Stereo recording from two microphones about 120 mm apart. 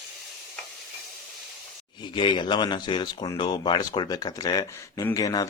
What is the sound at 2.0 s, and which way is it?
Speech, 40° left (ahead or behind).